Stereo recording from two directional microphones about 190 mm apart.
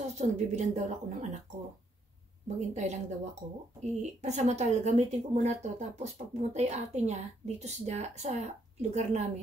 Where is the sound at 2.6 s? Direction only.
40° right (ahead or behind).